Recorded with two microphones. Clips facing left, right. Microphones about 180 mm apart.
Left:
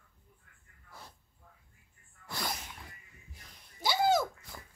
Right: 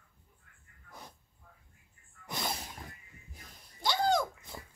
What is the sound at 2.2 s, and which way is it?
Sneeze, 20° right (ahead or behind).